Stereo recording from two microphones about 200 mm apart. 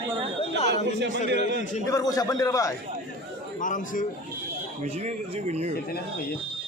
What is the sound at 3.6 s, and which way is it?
Speech, 40° left (ahead or behind).